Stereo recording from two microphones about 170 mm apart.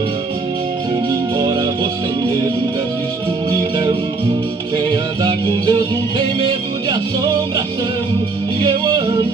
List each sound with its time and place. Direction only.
4.7 s music: 25° right (ahead or behind)
8.5 s music: 25° right (ahead or behind)